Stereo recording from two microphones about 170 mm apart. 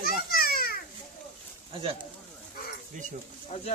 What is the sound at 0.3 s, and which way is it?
Children playing, 60° left (ahead or behind).